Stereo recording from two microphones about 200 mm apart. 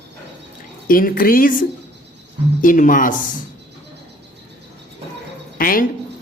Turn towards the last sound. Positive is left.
turn(degrees=45)  # may be behind; listen again after turning